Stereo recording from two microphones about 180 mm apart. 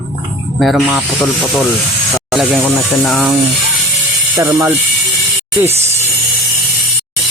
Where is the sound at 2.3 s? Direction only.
Centre (ahead or behind).